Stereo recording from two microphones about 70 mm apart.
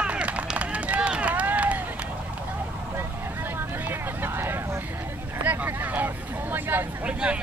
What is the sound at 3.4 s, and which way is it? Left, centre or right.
Vehicle, right.